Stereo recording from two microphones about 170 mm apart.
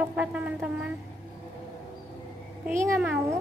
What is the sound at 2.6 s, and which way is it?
Speech, 10° right (ahead or behind).